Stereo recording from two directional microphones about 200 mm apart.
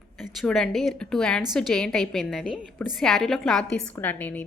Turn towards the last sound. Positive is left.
turn(degrees=10)  # may be behind; listen again after turning